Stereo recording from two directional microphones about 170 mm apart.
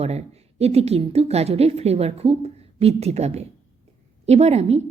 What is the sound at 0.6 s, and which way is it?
A woman's voice, 35° right (ahead or behind).